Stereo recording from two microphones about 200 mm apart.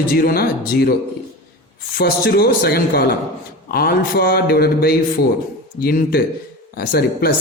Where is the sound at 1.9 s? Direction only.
50° left (ahead or behind).